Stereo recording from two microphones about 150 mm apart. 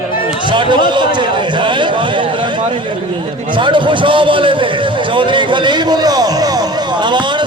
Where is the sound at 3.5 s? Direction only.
35° right (ahead or behind).